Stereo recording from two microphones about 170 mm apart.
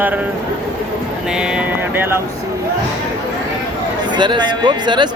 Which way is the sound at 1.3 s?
5° right (ahead or behind).